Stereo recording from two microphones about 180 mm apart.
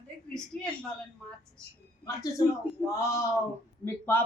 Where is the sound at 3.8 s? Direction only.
15° left (ahead or behind).